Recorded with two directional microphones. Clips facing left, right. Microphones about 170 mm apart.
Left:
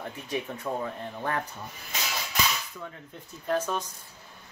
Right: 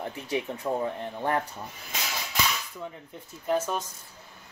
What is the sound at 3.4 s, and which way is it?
Speech, 5° right (ahead or behind).